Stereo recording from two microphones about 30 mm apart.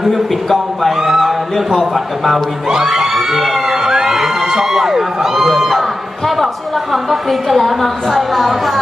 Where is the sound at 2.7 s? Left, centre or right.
Centre.